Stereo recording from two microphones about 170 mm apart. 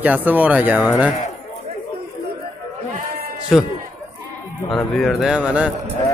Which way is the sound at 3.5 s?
Centre (ahead or behind).